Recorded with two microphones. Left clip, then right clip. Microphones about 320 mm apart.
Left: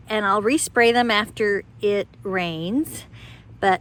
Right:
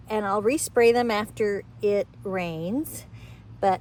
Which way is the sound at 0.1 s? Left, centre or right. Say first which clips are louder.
Left 4 dB; left.